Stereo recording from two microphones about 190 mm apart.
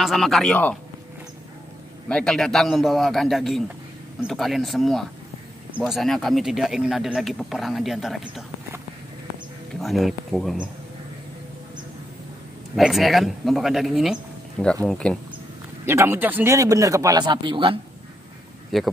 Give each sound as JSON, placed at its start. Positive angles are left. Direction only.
{"t": 0.0, "sound": "speech", "side_deg": 0}
{"t": 2.0, "sound": "speech", "side_deg": 5}
{"t": 9.8, "sound": "speech", "side_deg": 0}
{"t": 12.7, "sound": "speech", "side_deg": 0}
{"t": 15.8, "sound": "speech", "side_deg": -15}
{"t": 18.7, "sound": "speech", "side_deg": 0}